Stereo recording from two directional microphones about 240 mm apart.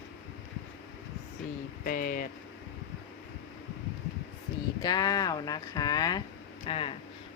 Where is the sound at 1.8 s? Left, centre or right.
Left.